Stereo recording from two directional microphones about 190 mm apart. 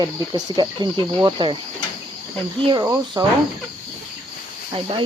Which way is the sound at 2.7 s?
20° right (ahead or behind).